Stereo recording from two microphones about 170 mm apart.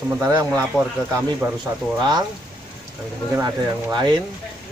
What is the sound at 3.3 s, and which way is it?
Speech, 20° right (ahead or behind).